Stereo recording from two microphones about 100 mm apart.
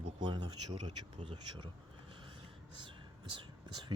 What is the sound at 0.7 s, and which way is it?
Speech, 75° right (ahead or behind).